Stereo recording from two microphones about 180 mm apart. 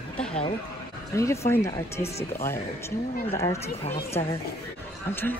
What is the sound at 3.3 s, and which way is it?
A man's voice, 15° left (ahead or behind).